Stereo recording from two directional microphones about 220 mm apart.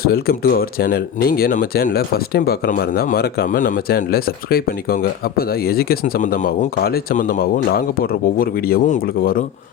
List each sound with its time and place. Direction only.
0.0 s speech: 45° left (ahead or behind)